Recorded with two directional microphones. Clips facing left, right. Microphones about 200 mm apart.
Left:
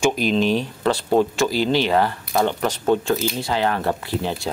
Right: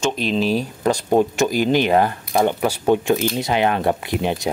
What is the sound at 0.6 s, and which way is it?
Speech, 15° right (ahead or behind).